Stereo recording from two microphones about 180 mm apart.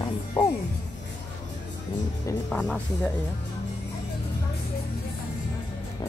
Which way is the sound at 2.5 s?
5° left (ahead or behind).